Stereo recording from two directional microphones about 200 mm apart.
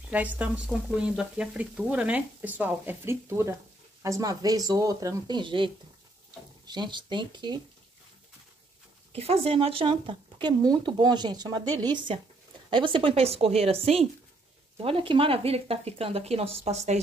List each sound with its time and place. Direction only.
0.1 s speech: 5° right (ahead or behind); by 7.6 s 25° right (ahead or behind)
9.1 s speech: 30° right (ahead or behind)